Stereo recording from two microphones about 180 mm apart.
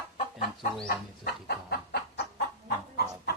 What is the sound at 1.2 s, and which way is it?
Chicken, 65° left (ahead or behind).